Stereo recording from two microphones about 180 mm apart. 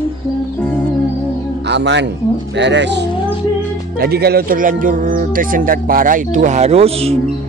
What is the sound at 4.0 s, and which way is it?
Speech, 60° right (ahead or behind).